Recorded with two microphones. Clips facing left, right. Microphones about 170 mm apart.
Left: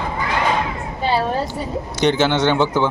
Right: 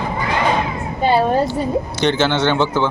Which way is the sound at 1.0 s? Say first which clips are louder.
Right 4 dB; 50° right (ahead or behind).